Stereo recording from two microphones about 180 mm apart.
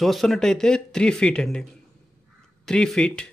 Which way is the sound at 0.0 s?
Centre (ahead or behind).